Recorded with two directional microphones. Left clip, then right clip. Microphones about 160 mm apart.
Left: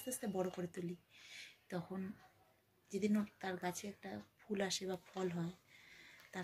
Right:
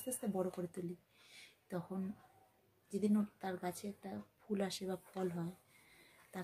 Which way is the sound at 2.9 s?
15° right (ahead or behind).